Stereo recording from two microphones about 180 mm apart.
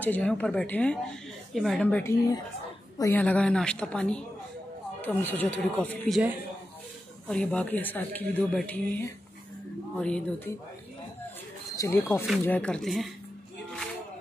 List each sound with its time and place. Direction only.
0.0 s a woman's voice: 10° left (ahead or behind)
7.2 s speech: 5° left (ahead or behind)
9.9 s a woman's voice: 5° left (ahead or behind)
11.7 s a woman's voice: 15° left (ahead or behind); by 13.1 s centre (ahead or behind)